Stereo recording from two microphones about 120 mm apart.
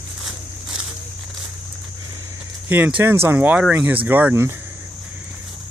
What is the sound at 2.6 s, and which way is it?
Speech, 15° right (ahead or behind).